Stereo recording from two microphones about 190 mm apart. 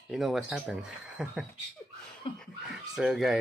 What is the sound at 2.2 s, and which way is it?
Laughter, 30° left (ahead or behind).